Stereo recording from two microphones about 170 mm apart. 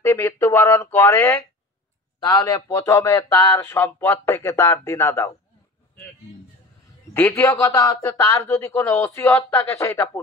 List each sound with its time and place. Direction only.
0.0 s speech: 15° left (ahead or behind)
7.2 s speech: 15° left (ahead or behind)